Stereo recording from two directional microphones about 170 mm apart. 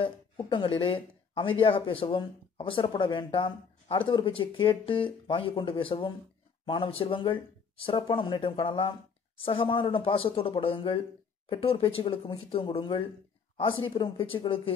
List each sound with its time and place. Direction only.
0.0 s speech: 30° left (ahead or behind)